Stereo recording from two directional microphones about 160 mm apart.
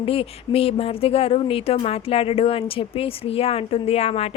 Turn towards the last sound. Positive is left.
turn(degrees=40)  # may be behind; listen again after turning